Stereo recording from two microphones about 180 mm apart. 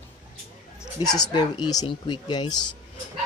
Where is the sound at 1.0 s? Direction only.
25° left (ahead or behind).